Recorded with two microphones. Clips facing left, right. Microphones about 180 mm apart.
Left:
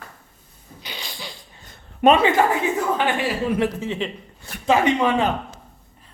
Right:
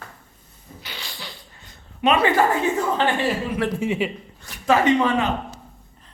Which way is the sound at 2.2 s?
15° left (ahead or behind).